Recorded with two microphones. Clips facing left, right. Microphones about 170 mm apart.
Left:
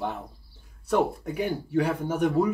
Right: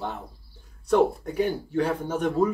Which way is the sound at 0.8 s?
5° left (ahead or behind).